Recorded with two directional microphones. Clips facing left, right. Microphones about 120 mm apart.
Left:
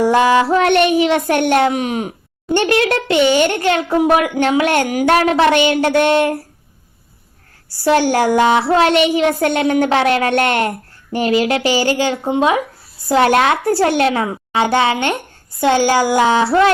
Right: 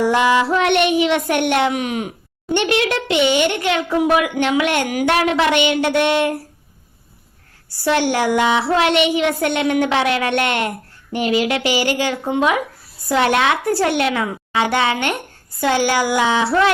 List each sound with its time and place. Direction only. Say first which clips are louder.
0.0 s child singing: left 3 dB; 35° left (ahead or behind)
7.9 s child singing: left 4 dB; 35° left (ahead or behind)